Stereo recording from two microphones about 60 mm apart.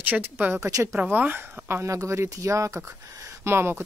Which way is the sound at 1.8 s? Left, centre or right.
Right.